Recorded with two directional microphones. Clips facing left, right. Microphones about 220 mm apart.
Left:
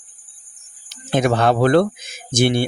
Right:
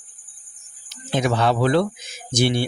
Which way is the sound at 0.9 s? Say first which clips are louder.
Left 4 dB; 50° left (ahead or behind).